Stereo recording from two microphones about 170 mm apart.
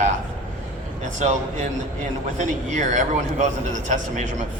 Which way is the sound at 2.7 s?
45° right (ahead or behind).